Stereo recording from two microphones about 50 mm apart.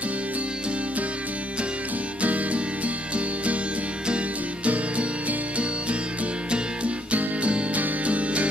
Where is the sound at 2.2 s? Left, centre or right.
Right.